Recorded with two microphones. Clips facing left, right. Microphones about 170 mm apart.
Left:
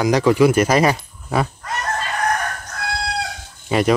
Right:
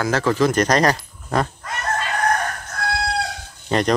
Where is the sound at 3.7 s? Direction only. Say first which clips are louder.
Left 2 dB; 5° left (ahead or behind).